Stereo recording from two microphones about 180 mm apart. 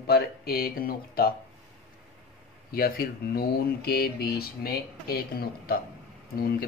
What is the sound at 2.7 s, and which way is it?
Speech, 55° left (ahead or behind).